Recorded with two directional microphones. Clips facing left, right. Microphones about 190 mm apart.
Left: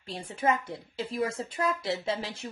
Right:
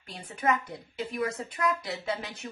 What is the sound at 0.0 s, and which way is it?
Speech, 30° left (ahead or behind).